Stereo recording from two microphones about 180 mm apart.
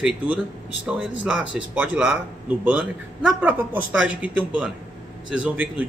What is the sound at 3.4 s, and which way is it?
Speech, 10° right (ahead or behind).